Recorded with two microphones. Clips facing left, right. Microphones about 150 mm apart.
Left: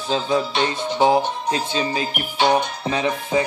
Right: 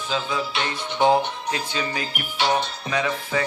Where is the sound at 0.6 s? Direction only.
15° left (ahead or behind).